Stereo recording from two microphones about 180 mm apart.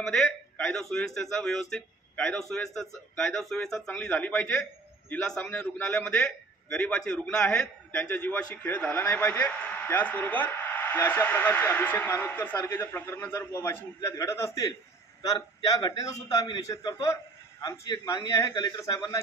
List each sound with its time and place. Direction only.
0.0 s a man's voice: centre (ahead or behind)